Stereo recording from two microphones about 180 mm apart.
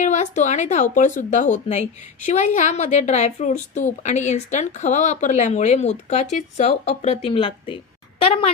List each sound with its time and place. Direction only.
0.0 s a woman's voice: 40° left (ahead or behind)